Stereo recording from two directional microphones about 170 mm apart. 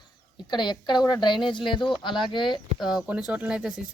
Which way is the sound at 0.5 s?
25° left (ahead or behind).